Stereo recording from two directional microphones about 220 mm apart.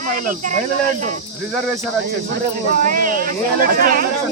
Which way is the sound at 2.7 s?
40° right (ahead or behind).